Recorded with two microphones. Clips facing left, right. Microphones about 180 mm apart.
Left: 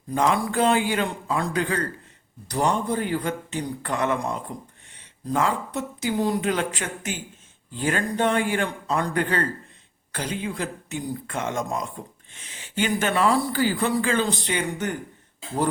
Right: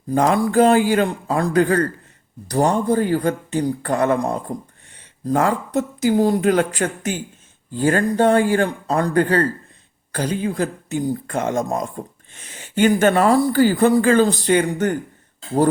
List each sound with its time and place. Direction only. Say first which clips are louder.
0.1 s speech: right 6 dB; 40° right (ahead or behind)